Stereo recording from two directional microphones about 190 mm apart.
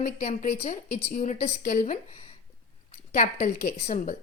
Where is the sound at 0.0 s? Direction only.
40° left (ahead or behind).